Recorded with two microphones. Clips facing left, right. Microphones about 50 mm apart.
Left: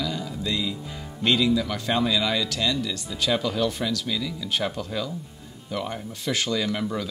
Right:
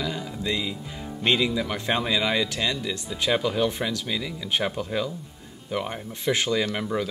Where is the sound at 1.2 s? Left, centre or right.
Right.